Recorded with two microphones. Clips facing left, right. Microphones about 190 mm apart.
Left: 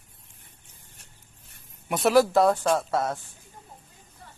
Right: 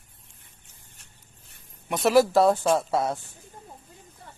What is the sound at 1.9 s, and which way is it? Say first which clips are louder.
Speech: even; centre (ahead or behind).